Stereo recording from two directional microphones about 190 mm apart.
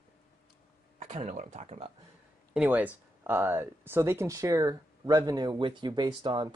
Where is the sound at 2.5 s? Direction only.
5° right (ahead or behind).